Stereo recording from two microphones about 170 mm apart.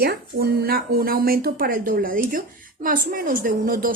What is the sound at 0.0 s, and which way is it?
Speech, 65° right (ahead or behind).